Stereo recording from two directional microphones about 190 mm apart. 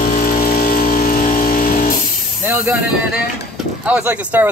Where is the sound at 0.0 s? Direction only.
45° left (ahead or behind).